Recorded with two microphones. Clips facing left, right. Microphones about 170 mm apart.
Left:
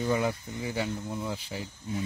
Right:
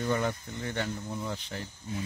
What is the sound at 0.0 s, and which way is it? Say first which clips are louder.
Speech: left 2 dB; 5° left (ahead or behind).